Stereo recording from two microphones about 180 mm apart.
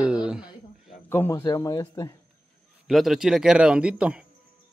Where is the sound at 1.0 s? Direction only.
15° left (ahead or behind).